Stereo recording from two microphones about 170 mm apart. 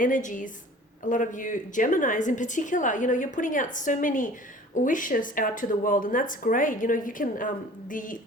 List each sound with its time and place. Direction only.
0.0 s speech: 50° left (ahead or behind)